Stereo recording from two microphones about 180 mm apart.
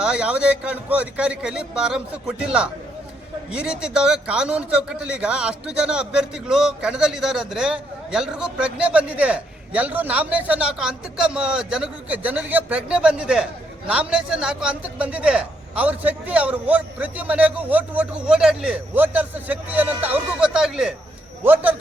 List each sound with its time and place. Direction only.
0.0 s a man's voice: 5° right (ahead or behind)